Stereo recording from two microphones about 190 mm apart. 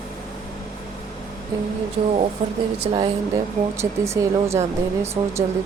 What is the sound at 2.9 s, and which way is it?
Speech, 30° right (ahead or behind).